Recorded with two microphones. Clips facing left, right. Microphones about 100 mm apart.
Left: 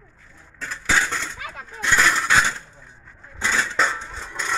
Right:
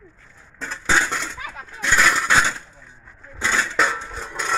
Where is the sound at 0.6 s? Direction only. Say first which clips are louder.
Right 1 dB; 25° right (ahead or behind).